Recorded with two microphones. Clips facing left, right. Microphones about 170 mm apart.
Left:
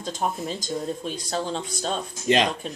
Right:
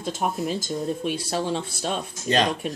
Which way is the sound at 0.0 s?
10° right (ahead or behind).